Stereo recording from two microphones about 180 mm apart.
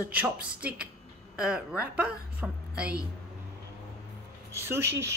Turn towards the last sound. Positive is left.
turn(degrees=-15)  # may be behind; listen again after turning